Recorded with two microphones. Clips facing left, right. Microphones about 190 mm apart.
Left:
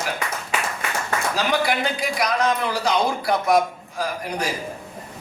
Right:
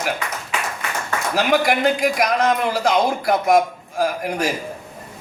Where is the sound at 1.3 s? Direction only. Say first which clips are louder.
Right 6 dB; 50° right (ahead or behind).